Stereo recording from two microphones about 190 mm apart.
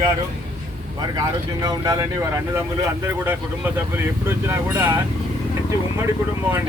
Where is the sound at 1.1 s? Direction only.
20° right (ahead or behind).